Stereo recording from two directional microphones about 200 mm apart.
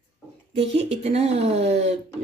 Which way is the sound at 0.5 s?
30° right (ahead or behind).